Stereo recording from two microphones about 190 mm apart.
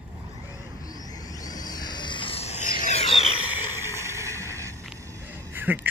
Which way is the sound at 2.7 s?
45° left (ahead or behind).